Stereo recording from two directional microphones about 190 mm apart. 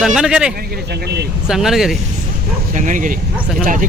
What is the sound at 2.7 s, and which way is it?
Speech, 40° right (ahead or behind).